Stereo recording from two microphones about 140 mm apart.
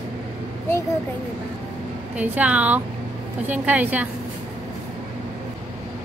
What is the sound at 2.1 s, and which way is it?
Speech, 10° right (ahead or behind).